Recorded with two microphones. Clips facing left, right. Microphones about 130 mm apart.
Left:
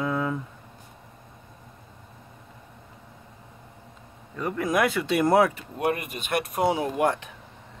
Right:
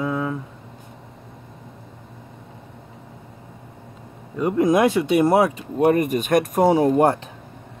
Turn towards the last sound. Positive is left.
turn(degrees=-35)  # may be behind; listen again after turning